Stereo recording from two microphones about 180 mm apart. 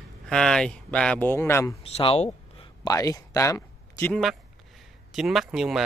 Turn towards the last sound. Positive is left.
turn(degrees=0)  # may be behind; listen again after turning